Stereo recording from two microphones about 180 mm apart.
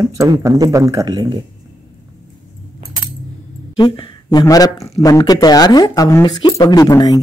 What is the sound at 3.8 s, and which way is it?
Speech, 25° left (ahead or behind).